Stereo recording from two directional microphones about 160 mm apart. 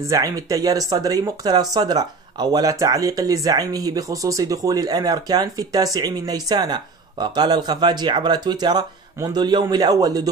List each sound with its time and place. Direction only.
0.1 s speech: 20° right (ahead or behind)